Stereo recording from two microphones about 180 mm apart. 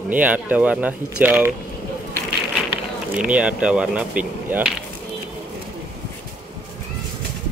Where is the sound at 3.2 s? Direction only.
5° right (ahead or behind).